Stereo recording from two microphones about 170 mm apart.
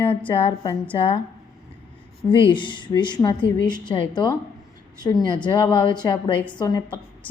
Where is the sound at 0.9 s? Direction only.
30° left (ahead or behind).